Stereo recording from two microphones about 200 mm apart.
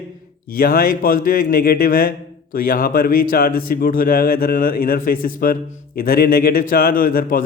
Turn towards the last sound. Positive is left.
turn(degrees=45)  # may be behind; listen again after turning